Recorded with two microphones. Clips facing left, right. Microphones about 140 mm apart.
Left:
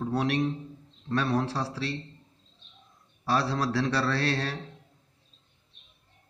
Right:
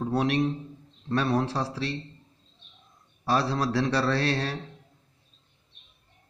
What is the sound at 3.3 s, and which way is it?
Speech, 20° right (ahead or behind).